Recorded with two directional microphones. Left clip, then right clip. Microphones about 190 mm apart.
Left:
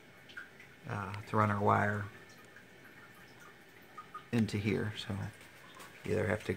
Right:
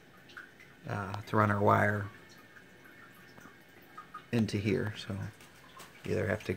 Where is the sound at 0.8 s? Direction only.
15° right (ahead or behind).